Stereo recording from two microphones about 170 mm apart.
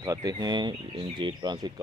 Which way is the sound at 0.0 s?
20° right (ahead or behind).